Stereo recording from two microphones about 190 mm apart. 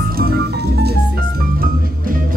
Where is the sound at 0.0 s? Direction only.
55° right (ahead or behind).